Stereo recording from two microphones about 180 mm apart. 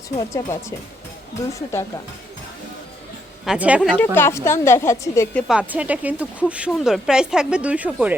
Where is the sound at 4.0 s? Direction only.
10° left (ahead or behind).